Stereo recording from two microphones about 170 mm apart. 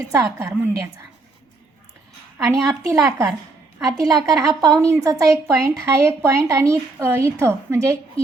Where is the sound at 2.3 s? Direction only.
20° right (ahead or behind).